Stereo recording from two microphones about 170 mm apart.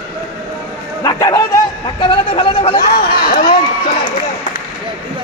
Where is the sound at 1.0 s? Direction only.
20° left (ahead or behind).